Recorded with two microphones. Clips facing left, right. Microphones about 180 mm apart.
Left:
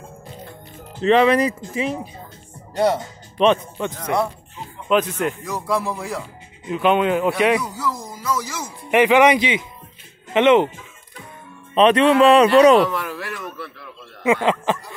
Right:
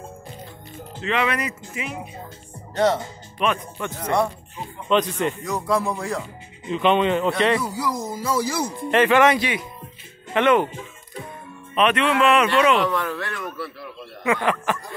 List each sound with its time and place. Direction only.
1.0 s a man's voice: 35° left (ahead or behind)
2.7 s speech: 10° left (ahead or behind)
3.3 s speech: 25° left (ahead or behind)
4.8 s speech: 5° left (ahead or behind)
7.6 s speech: 10° right (ahead or behind); by 8.6 s 30° right (ahead or behind)
8.9 s speech: 15° left (ahead or behind)
11.7 s a man's voice: 30° left (ahead or behind)
12.8 s speech: 10° left (ahead or behind)
14.2 s speech: 20° left (ahead or behind)